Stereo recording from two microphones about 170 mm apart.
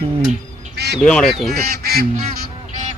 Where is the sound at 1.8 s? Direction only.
65° right (ahead or behind).